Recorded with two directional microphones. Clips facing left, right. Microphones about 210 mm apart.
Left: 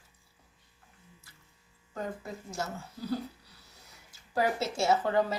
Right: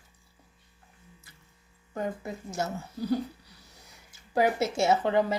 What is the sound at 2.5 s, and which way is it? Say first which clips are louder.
Speech: right 6 dB; 20° right (ahead or behind).